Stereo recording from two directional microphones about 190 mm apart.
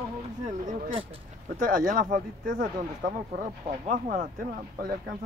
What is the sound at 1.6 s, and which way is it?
Speech, 45° right (ahead or behind).